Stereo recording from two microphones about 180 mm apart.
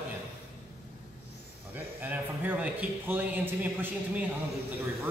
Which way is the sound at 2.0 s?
10° right (ahead or behind).